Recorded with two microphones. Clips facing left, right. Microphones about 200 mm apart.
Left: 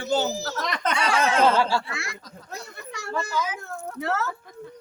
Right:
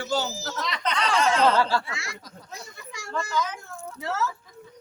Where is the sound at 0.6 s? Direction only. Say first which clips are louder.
Left 1 dB; 50° left (ahead or behind).